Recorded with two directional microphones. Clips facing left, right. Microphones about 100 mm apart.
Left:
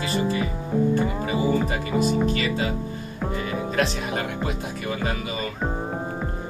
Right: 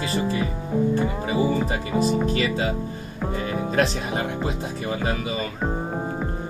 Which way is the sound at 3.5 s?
30° right (ahead or behind).